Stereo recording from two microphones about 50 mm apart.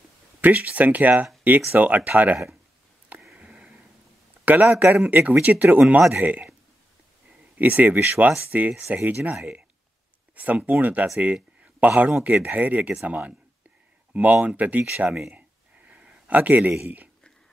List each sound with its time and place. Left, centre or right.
0.4 s speech: right
3.3 s a sound: centre
4.5 s speech: right
7.5 s speech: right
15.2 s a sound: right
16.3 s speech: right